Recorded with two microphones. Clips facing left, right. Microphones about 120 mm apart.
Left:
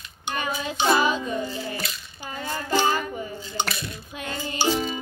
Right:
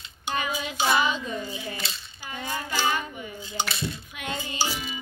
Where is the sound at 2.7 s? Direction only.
40° left (ahead or behind).